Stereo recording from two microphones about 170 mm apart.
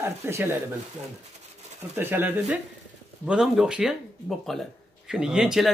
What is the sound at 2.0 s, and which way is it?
Speech, 10° right (ahead or behind).